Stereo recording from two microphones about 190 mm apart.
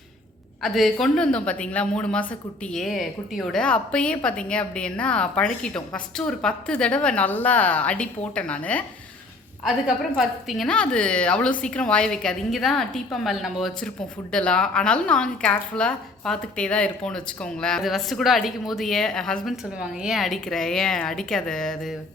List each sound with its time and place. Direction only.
0.6 s a woman's voice: centre (ahead or behind)